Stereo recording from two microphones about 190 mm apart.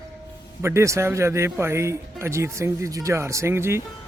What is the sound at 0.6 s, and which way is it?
A man's voice, 15° right (ahead or behind).